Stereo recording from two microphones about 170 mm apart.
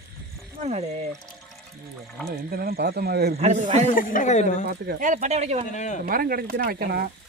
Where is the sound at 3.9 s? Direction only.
50° left (ahead or behind).